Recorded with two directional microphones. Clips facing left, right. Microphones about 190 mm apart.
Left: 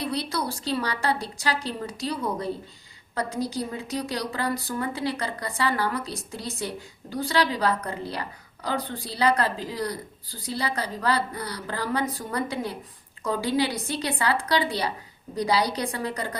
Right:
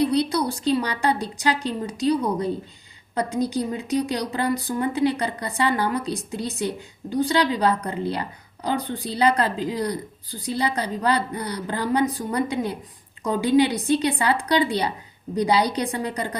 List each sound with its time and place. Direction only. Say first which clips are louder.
0.0 s a woman's voice: right 8 dB; 20° right (ahead or behind)